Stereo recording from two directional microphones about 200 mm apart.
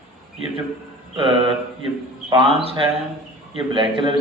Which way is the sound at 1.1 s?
25° right (ahead or behind).